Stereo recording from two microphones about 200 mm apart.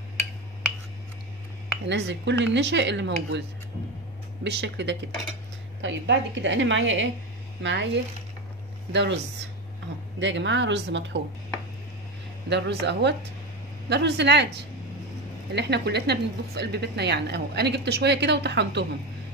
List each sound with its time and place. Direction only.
1.9 s a woman's voice: 60° right (ahead or behind)
12.4 s a woman's voice: 60° right (ahead or behind)